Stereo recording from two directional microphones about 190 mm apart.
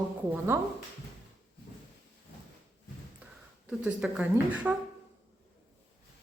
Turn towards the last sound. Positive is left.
turn(degrees=-5)  # may be behind; listen again after turning